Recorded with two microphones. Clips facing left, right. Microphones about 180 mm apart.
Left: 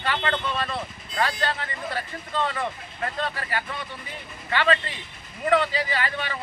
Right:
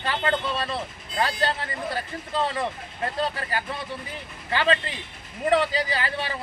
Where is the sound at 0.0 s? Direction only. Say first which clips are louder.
Right 1 dB; 30° right (ahead or behind).